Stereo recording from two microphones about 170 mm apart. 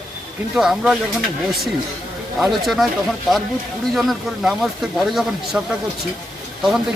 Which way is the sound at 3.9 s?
Centre (ahead or behind).